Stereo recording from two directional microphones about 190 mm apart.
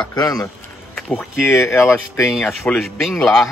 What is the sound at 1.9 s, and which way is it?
Speech, 15° left (ahead or behind).